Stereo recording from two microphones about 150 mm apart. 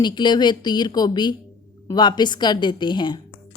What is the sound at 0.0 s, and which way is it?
A woman's voice, 30° left (ahead or behind).